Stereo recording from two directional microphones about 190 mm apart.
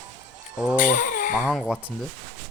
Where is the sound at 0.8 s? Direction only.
45° left (ahead or behind).